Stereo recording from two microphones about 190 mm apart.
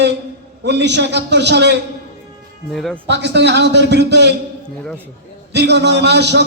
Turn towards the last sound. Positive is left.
turn(degrees=-65)  # may be behind; listen again after turning